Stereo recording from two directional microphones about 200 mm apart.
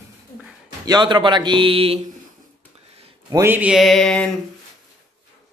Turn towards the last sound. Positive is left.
turn(degrees=5)  # may be behind; listen again after turning